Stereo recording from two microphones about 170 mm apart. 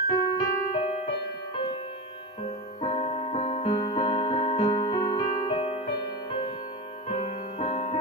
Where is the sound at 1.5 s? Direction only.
30° left (ahead or behind).